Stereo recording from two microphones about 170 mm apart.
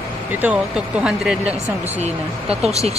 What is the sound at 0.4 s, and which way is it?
Speech, 5° right (ahead or behind).